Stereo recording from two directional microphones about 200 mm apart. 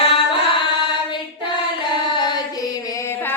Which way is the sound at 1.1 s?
25° left (ahead or behind).